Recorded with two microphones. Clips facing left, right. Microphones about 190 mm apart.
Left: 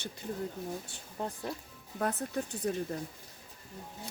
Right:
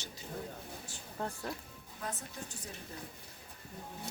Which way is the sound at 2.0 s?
60° left (ahead or behind).